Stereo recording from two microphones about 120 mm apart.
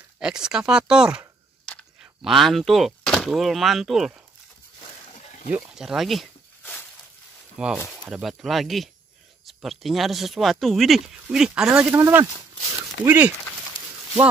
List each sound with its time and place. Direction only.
0.2 s speech: 5° right (ahead or behind)
2.2 s speech: centre (ahead or behind)
5.1 s a sound: 80° left
5.5 s speech: 5° right (ahead or behind)
7.5 s speech: 5° right (ahead or behind)
11.9 s speech: 20° right (ahead or behind)